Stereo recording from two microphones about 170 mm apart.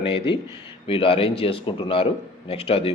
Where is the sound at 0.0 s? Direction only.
30° left (ahead or behind).